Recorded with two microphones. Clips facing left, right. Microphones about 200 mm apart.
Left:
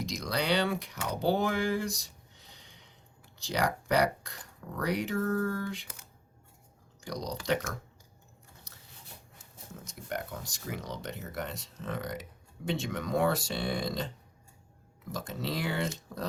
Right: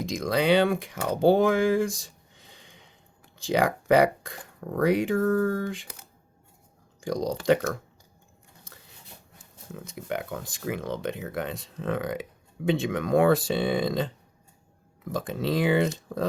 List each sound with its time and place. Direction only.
0.0 s speech: 50° right (ahead or behind)
7.0 s speech: 50° right (ahead or behind)
9.4 s speech: 60° right (ahead or behind)
15.1 s speech: 55° right (ahead or behind)